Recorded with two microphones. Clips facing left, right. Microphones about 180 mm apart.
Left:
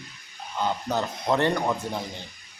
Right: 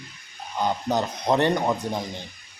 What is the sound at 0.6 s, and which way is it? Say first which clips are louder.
Speech: right 2 dB; 15° right (ahead or behind).